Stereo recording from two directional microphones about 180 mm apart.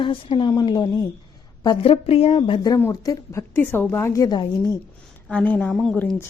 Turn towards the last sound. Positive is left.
turn(degrees=5)  # may be behind; listen again after turning